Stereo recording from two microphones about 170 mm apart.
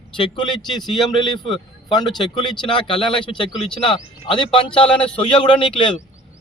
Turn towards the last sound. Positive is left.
turn(degrees=30)  # may be behind; listen again after turning